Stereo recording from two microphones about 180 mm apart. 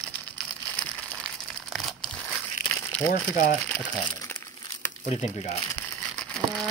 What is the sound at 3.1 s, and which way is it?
Speech, 50° left (ahead or behind).